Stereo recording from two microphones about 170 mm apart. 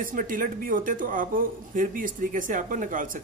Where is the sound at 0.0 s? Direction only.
55° right (ahead or behind).